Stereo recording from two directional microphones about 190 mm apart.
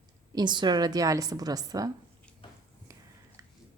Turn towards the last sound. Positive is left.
turn(degrees=-20)  # may be behind; listen again after turning